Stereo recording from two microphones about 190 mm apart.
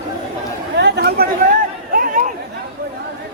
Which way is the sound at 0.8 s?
55° right (ahead or behind).